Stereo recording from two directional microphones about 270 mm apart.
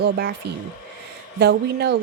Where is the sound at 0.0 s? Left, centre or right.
Right.